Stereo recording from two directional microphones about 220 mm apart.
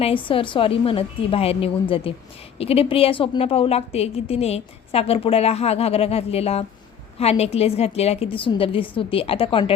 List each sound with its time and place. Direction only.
0.0 s a woman's voice: 25° left (ahead or behind)